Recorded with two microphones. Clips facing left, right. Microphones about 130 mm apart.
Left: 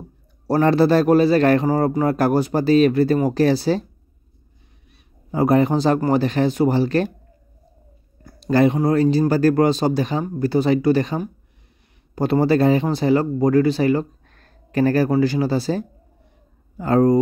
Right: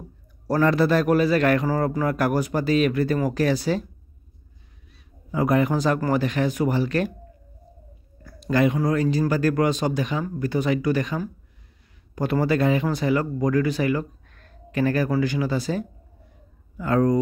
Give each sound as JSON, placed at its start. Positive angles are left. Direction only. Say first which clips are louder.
{"t": 0.5, "sound": "speech", "louder": "left 4 dB", "side_deg": 30}
{"t": 5.3, "sound": "speech", "louder": "left 4 dB", "side_deg": 35}
{"t": 8.2, "sound": "speech", "louder": "left 4 dB", "side_deg": 30}